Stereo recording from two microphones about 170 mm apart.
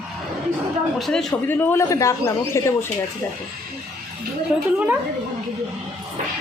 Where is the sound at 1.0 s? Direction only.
5° left (ahead or behind).